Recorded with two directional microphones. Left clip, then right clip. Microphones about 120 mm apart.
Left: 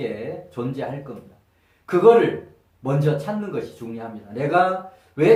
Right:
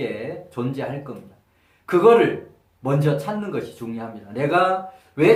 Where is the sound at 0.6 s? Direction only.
25° right (ahead or behind).